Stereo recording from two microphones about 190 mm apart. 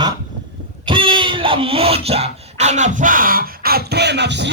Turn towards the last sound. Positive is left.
turn(degrees=-65)  # may be behind; listen again after turning